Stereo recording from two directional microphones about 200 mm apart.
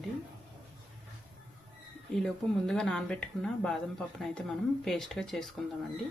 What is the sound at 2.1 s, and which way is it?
Speech, 5° left (ahead or behind).